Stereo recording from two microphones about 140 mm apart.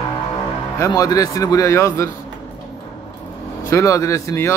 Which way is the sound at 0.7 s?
25° left (ahead or behind).